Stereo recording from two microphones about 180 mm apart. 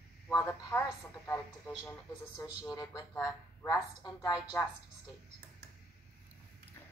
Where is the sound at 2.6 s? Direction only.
20° left (ahead or behind).